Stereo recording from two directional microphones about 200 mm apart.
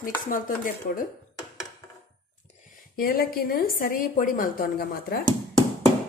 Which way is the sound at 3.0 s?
45° left (ahead or behind).